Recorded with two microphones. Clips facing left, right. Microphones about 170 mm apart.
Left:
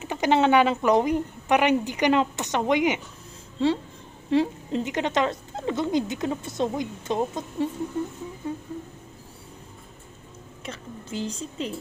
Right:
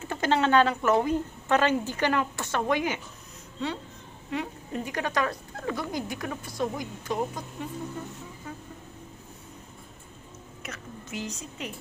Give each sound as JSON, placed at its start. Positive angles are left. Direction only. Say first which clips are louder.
{"t": 0.0, "sound": "speech", "louder": "left 4 dB", "side_deg": 15}
{"t": 4.3, "sound": "speech", "louder": "left 10 dB", "side_deg": 25}
{"t": 10.6, "sound": "speech", "louder": "left 4 dB", "side_deg": 30}